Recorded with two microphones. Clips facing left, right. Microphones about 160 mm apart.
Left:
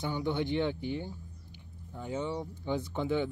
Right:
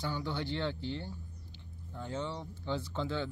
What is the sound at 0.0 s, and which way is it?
Speech, 20° left (ahead or behind).